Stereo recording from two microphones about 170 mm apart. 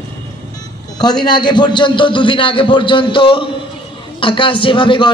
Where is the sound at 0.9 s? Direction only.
25° left (ahead or behind).